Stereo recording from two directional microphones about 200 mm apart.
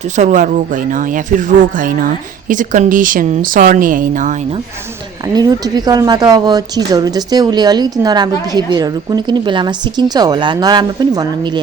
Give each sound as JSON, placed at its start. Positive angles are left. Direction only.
{"t": 0.2, "sound": "a woman's voice", "side_deg": -35}
{"t": 5.3, "sound": "a woman's voice", "side_deg": -20}